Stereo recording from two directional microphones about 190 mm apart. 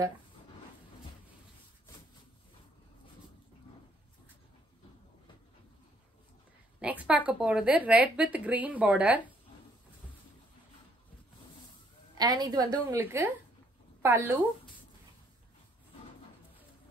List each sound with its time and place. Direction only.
6.8 s a woman's voice: 5° right (ahead or behind)
12.2 s a woman's voice: 20° right (ahead or behind)